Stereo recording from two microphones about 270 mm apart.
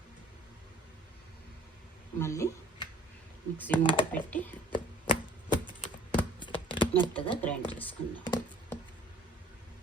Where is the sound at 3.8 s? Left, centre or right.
Centre.